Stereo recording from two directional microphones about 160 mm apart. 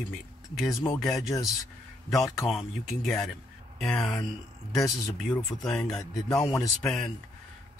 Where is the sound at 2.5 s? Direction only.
Centre (ahead or behind).